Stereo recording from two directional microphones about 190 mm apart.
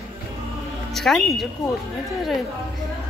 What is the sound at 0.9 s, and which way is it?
Speech, centre (ahead or behind).